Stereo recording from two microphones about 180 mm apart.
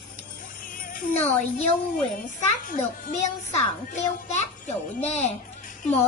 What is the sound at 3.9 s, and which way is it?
A child's voice, 40° left (ahead or behind).